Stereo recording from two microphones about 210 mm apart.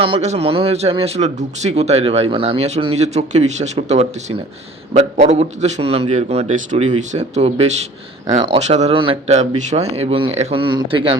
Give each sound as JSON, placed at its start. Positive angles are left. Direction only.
{"t": 0.0, "sound": "a man's voice", "side_deg": -30}